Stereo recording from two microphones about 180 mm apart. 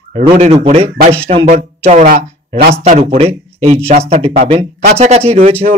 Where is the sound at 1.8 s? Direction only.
45° right (ahead or behind).